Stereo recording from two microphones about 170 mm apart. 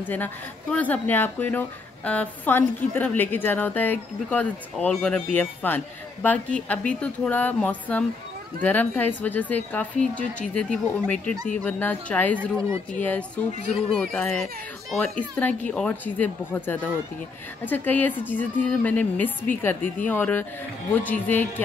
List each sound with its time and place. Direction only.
0.0 s speech: 10° left (ahead or behind)
12.4 s speech: 15° right (ahead or behind)
13.0 s a child's voice: 10° left (ahead or behind)